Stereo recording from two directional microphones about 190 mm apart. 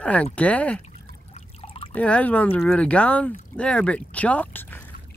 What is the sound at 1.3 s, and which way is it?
Trickle, 30° left (ahead or behind).